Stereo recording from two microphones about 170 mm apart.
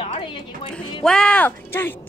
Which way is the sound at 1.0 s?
5° left (ahead or behind).